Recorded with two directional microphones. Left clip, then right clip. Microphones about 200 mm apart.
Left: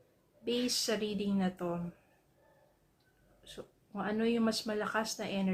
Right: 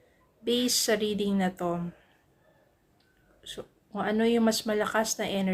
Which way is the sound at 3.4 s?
30° right (ahead or behind).